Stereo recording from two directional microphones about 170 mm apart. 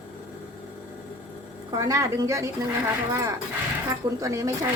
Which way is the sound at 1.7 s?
20° right (ahead or behind).